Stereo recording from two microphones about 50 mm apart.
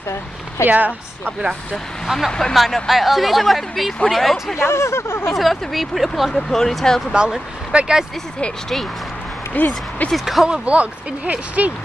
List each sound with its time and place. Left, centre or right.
0.7 s speech: right
2.1 s speech: centre
4.6 s speech: left
5.3 s speech: centre
7.1 s speech: centre
9.6 s speech: left
10.1 s speech: centre
10.5 s speech: right